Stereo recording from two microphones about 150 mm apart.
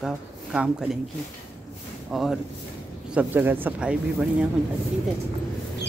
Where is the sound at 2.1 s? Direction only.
Centre (ahead or behind).